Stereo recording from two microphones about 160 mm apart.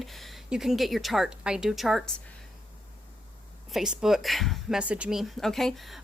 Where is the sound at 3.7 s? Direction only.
5° right (ahead or behind).